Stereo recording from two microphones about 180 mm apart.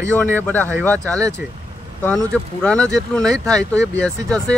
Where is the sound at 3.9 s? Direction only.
5° left (ahead or behind).